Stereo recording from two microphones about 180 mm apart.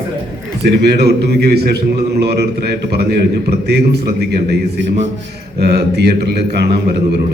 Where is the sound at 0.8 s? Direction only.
65° right (ahead or behind).